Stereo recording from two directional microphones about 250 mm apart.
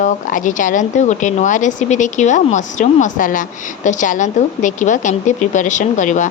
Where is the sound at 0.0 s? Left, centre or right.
Left.